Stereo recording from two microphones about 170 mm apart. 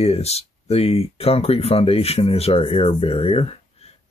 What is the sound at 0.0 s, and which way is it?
Speech, 40° left (ahead or behind).